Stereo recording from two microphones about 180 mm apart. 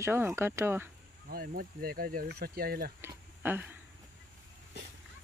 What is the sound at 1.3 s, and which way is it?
Speech, 55° right (ahead or behind).